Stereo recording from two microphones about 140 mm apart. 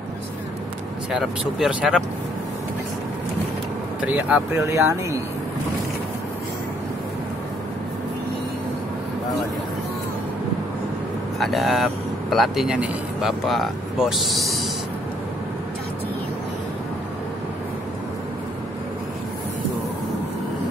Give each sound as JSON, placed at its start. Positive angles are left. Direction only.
{"t": 1.1, "sound": "speech", "side_deg": -5}
{"t": 4.0, "sound": "speech", "side_deg": -10}
{"t": 11.3, "sound": "speech", "side_deg": 0}